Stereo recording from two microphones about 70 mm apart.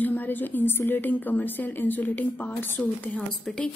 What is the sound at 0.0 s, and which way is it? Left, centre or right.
A woman's voice, left.